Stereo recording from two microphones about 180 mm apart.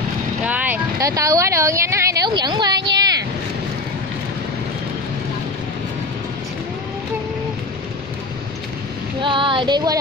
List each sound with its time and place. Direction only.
0.4 s speech: 10° right (ahead or behind); by 3.1 s 25° right (ahead or behind)
9.2 s child singing: 30° right (ahead or behind)